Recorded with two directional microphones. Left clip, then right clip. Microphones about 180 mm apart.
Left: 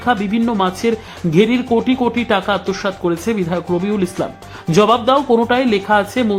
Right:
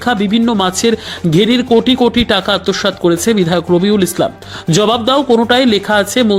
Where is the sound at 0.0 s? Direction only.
20° right (ahead or behind).